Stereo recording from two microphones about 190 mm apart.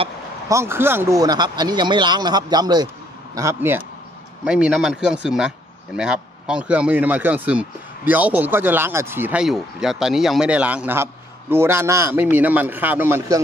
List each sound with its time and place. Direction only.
0.5 s speech: 15° right (ahead or behind)